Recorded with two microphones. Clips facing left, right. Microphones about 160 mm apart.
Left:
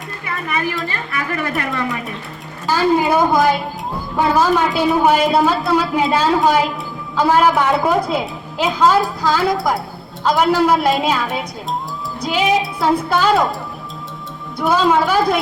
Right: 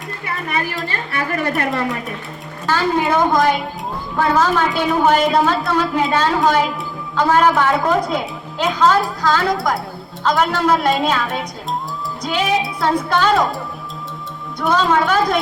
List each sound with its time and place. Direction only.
1.1 s speech: 35° right (ahead or behind)
2.6 s a man's voice: 10° left (ahead or behind)
14.6 s a man's voice: 10° left (ahead or behind)